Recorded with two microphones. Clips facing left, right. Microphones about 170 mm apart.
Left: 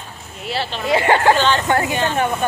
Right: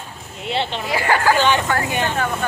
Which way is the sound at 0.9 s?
25° left (ahead or behind).